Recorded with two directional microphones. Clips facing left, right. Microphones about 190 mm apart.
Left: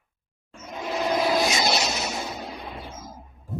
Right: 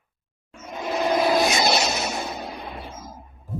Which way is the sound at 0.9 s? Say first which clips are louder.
Right 3 dB; 55° right (ahead or behind).